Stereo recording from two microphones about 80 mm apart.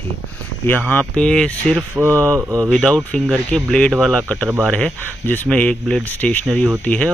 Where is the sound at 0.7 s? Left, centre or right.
Centre.